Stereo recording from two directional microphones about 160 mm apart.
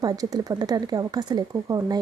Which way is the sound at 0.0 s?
20° right (ahead or behind).